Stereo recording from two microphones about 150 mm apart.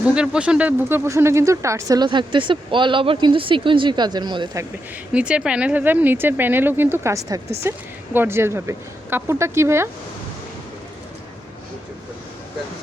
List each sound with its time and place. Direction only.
0.1 s speech: 5° right (ahead or behind); by 4.6 s 30° right (ahead or behind)
5.1 s speech: 5° right (ahead or behind)